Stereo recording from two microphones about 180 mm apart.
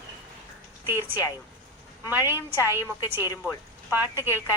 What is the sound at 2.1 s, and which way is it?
Speech, 10° right (ahead or behind).